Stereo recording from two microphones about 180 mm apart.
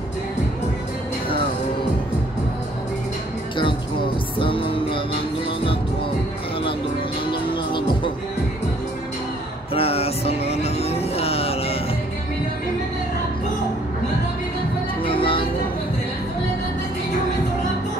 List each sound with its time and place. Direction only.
4.4 s music: 30° left (ahead or behind)
7.2 s music: 25° left (ahead or behind)
9.8 s music: 35° left (ahead or behind)
15.0 s music: 30° left (ahead or behind)